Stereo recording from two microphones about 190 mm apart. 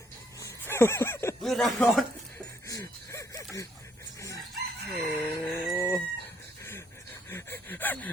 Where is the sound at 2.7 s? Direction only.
15° left (ahead or behind).